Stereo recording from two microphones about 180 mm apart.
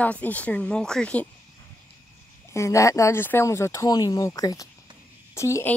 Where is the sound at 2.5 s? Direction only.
15° left (ahead or behind).